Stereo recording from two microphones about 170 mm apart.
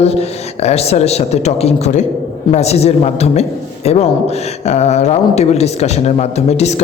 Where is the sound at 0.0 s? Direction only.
40° left (ahead or behind).